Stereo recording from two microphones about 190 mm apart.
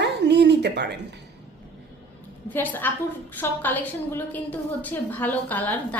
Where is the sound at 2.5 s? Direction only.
10° left (ahead or behind).